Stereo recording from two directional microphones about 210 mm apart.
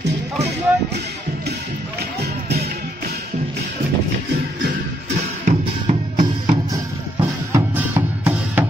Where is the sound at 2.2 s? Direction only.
50° right (ahead or behind).